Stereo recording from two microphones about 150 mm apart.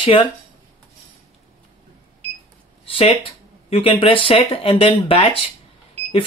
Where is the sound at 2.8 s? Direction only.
40° left (ahead or behind).